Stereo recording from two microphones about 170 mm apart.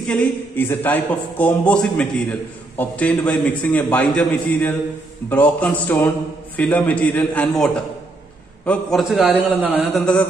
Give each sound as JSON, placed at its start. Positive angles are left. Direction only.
{"t": 0.0, "sound": "a man's voice", "side_deg": 5}